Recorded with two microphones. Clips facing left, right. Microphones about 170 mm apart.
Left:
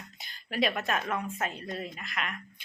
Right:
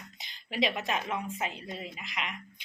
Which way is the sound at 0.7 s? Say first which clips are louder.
Left 1 dB; 15° right (ahead or behind).